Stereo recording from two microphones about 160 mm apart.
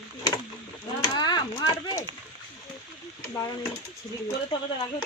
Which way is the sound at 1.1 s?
25° left (ahead or behind).